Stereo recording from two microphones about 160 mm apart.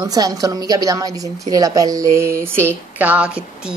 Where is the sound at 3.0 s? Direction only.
10° right (ahead or behind).